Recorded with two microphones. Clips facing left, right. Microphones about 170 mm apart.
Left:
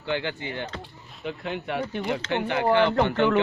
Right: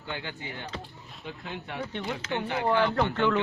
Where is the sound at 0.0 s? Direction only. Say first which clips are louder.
Left 8 dB; 80° left.